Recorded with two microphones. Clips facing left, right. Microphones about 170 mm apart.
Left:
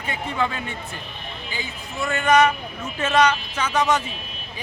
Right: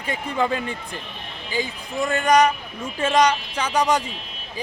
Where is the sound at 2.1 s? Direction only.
35° right (ahead or behind).